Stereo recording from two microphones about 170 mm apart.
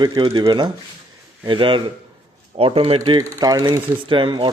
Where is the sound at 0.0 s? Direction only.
30° right (ahead or behind).